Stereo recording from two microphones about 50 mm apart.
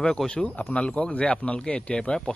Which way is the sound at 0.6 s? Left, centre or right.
Left.